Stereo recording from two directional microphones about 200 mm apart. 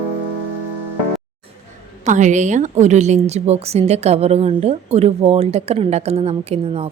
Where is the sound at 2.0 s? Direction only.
40° right (ahead or behind).